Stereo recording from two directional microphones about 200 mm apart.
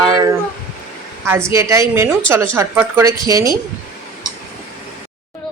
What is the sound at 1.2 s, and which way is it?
A woman's voice, 15° right (ahead or behind).